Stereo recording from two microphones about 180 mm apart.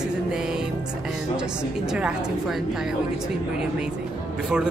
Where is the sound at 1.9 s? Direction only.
5° right (ahead or behind).